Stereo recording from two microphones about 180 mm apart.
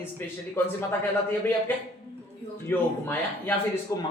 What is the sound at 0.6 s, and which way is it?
Speech, 10° left (ahead or behind).